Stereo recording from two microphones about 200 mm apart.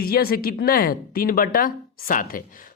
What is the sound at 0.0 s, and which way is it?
A woman's voice, 50° left (ahead or behind).